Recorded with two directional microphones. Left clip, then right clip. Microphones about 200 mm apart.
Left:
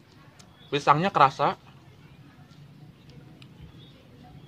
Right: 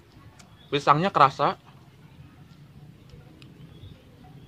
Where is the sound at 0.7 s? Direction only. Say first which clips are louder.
Right 1 dB; 20° right (ahead or behind).